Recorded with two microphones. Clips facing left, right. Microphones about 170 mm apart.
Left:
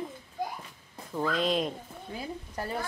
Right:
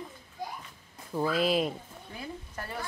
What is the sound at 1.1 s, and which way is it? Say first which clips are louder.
Speech: right 1 dB; 10° right (ahead or behind).